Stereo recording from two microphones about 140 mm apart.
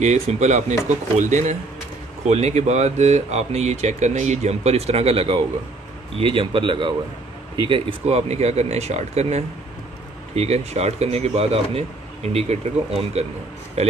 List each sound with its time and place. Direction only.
0.0 s speech: 55° right (ahead or behind)